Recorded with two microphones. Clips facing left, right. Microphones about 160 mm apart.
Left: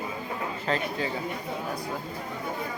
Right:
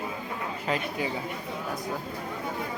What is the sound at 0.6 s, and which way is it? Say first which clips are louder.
Speech: left 1 dB; 10° right (ahead or behind).